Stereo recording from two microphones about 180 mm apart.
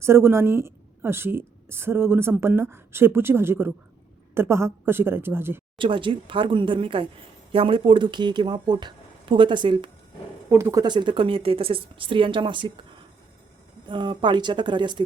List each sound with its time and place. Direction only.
0.0 s a woman's voice: 15° right (ahead or behind)
5.7 s speech: 30° right (ahead or behind)
13.8 s speech: 25° right (ahead or behind)